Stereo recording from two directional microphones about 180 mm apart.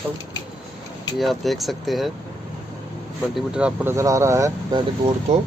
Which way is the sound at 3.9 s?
15° right (ahead or behind).